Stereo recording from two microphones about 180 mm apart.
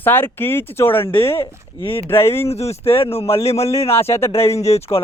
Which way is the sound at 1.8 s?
30° left (ahead or behind).